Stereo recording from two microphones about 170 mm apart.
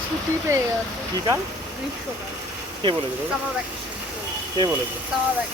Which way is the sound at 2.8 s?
25° right (ahead or behind).